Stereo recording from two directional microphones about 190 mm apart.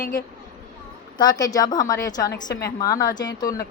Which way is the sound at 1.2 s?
20° left (ahead or behind).